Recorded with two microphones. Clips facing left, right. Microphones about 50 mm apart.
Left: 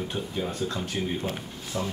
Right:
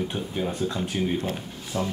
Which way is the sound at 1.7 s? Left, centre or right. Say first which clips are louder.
Right 3 dB; right.